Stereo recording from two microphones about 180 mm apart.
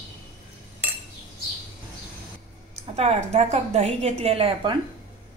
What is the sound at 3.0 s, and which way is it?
A woman's voice, 35° right (ahead or behind).